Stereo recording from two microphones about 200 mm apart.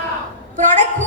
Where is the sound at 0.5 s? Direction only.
40° right (ahead or behind).